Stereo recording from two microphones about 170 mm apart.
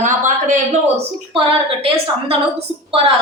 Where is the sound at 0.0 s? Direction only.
50° right (ahead or behind).